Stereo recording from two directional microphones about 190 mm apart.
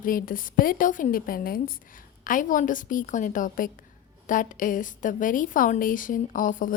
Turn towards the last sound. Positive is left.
turn(degrees=45)  # may be behind; listen again after turning